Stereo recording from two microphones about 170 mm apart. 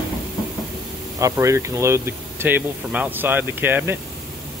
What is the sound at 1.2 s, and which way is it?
Speech, 20° right (ahead or behind).